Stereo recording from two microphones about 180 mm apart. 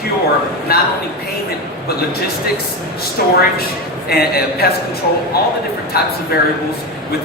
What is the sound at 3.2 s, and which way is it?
A man's voice, 55° left (ahead or behind).